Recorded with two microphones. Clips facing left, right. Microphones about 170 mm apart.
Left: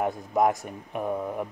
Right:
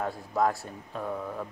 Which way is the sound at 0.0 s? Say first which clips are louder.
Left 4 dB; 20° left (ahead or behind).